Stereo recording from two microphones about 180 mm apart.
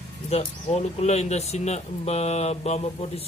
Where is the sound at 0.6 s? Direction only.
35° left (ahead or behind).